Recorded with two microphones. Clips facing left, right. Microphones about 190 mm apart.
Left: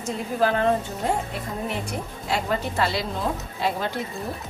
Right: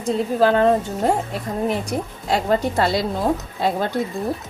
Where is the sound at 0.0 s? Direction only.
35° right (ahead or behind).